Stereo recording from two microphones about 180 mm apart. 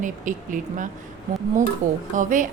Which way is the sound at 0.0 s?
45° right (ahead or behind).